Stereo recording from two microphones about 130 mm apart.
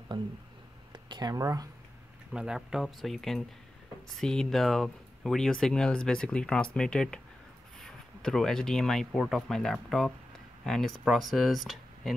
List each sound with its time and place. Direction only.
0.1 s speech: 35° right (ahead or behind)
2.3 s speech: 5° right (ahead or behind)